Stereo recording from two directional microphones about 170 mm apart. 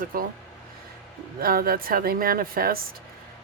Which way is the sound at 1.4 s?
60° right (ahead or behind).